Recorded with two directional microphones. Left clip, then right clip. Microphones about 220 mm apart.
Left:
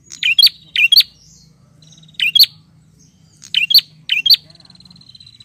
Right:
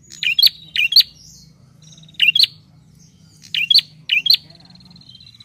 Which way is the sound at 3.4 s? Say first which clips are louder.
Left 3 dB; 20° left (ahead or behind).